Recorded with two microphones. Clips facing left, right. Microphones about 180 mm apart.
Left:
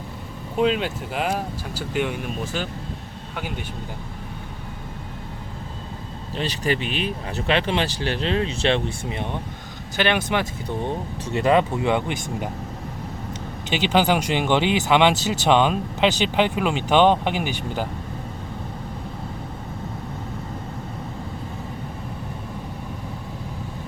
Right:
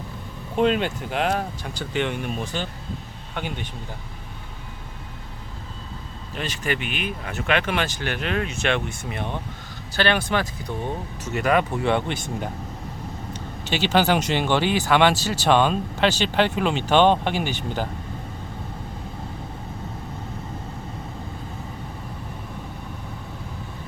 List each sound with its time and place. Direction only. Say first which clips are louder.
0.5 s speech: right 1 dB; centre (ahead or behind)
6.3 s speech: left 3 dB; 35° left (ahead or behind); by 17.8 s 10° left (ahead or behind)